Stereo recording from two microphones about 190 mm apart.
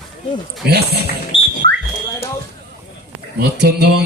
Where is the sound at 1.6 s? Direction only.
60° right (ahead or behind).